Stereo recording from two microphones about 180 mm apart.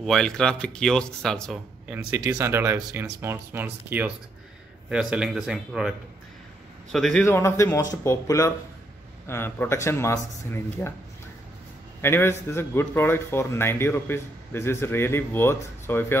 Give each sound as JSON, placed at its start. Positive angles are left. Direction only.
{"t": 0.0, "sound": "speech", "side_deg": 5}
{"t": 2.1, "sound": "speech", "side_deg": -15}
{"t": 7.2, "sound": "speech", "side_deg": 15}
{"t": 12.0, "sound": "speech", "side_deg": 15}